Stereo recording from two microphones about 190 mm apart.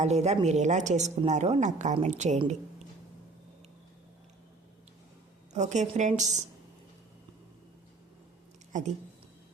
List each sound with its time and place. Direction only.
0.0 s speech: 35° right (ahead or behind)
5.5 s speech: 40° right (ahead or behind)
8.7 s speech: 40° right (ahead or behind)